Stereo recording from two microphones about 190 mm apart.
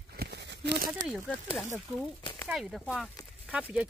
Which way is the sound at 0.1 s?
55° right (ahead or behind).